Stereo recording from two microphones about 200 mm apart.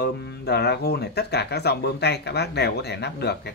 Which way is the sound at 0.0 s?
55° left (ahead or behind).